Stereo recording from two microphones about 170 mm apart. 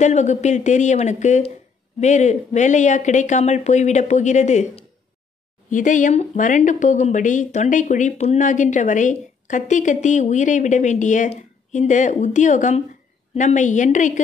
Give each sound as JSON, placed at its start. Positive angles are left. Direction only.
{"t": 0.0, "sound": "speech", "side_deg": 45}